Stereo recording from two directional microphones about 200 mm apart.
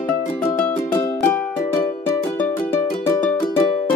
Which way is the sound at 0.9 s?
15° left (ahead or behind).